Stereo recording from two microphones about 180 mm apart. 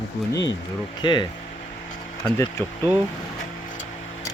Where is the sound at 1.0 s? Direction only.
25° left (ahead or behind).